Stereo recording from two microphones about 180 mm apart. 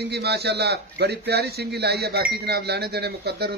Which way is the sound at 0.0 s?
65° right (ahead or behind).